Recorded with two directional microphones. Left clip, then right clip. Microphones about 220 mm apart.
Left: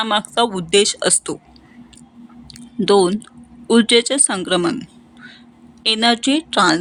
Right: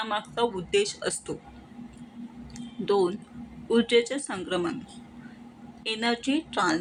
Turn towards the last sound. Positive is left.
turn(degrees=45)  # may be behind; listen again after turning